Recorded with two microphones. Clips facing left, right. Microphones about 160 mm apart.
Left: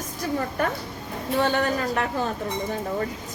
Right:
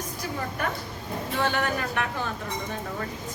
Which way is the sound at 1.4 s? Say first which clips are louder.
Left 4 dB; 30° left (ahead or behind).